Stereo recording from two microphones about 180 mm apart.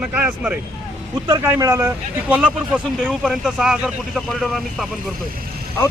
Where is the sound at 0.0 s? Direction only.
5° right (ahead or behind).